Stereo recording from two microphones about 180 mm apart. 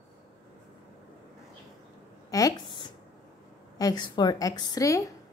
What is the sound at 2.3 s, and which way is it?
A woman's voice, 20° left (ahead or behind).